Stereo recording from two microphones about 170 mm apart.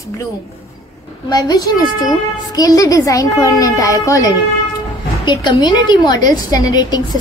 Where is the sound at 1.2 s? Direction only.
25° left (ahead or behind).